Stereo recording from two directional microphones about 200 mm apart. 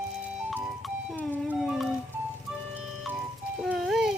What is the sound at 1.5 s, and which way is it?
Dog, centre (ahead or behind).